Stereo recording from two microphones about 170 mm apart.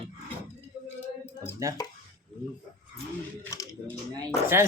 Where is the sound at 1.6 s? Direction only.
20° right (ahead or behind).